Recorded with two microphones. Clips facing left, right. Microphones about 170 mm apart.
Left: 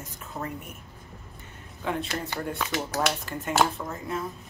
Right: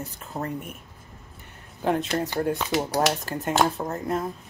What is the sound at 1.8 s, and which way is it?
Speech, 40° right (ahead or behind).